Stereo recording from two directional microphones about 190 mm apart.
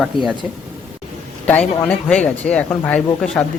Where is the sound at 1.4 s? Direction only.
5° left (ahead or behind).